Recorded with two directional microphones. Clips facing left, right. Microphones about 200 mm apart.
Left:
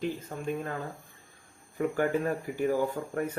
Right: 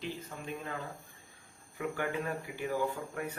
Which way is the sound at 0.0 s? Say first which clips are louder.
Left 8 dB; 50° left (ahead or behind).